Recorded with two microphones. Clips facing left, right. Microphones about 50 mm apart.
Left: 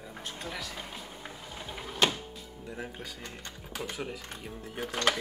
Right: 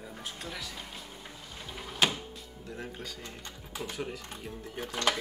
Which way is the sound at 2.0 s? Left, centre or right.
Centre.